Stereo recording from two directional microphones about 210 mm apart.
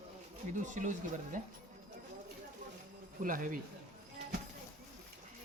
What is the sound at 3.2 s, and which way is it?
Speech, 40° right (ahead or behind).